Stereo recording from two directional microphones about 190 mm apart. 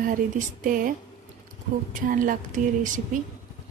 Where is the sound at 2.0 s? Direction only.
45° right (ahead or behind).